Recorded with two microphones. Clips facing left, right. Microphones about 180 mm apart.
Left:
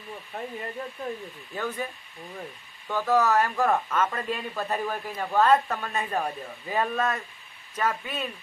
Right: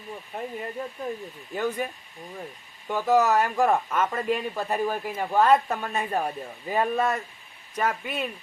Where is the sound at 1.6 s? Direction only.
20° right (ahead or behind).